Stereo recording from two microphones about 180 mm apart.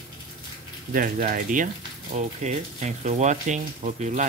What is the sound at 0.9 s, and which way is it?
Speech, 50° right (ahead or behind).